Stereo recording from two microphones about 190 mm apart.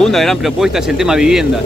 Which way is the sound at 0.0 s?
Centre (ahead or behind).